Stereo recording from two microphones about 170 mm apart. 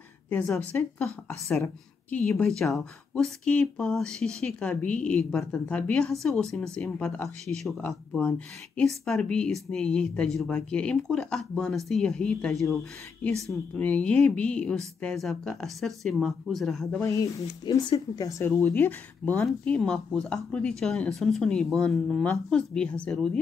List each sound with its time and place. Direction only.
0.3 s a woman's voice: 10° left (ahead or behind)
17.0 s speech: 20° left (ahead or behind)